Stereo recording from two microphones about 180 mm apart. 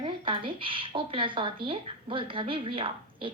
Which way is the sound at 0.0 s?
30° right (ahead or behind).